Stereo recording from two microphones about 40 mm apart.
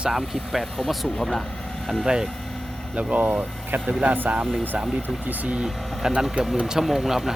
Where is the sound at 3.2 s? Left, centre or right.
Right.